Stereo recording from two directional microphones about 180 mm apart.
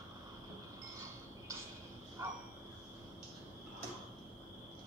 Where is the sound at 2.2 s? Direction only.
15° right (ahead or behind).